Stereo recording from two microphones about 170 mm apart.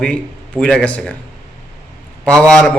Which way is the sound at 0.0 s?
5° left (ahead or behind).